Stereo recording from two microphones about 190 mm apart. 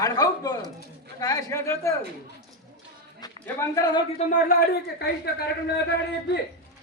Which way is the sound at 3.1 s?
20° left (ahead or behind).